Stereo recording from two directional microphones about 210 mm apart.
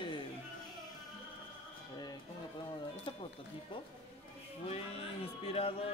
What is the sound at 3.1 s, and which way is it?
Music, 25° left (ahead or behind).